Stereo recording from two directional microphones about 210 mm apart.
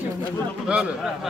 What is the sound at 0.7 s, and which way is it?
Speech, 5° right (ahead or behind).